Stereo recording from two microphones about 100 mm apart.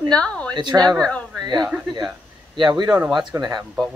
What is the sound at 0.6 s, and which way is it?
Speech, 45° right (ahead or behind).